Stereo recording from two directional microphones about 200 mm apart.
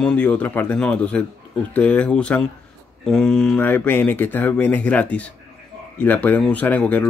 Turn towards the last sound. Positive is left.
turn(degrees=5)  # may be behind; listen again after turning